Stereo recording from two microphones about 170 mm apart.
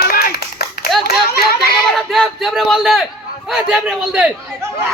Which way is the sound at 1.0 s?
65° left (ahead or behind).